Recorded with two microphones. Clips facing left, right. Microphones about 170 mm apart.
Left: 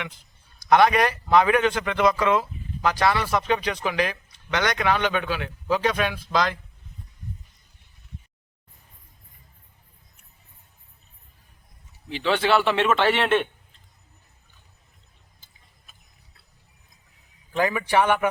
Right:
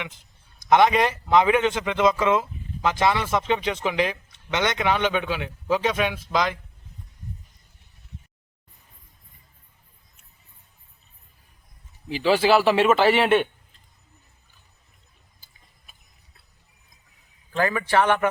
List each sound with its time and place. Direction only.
0.0 s a man's voice: 20° right (ahead or behind)
12.0 s a man's voice: 5° right (ahead or behind)
17.5 s a man's voice: 15° left (ahead or behind)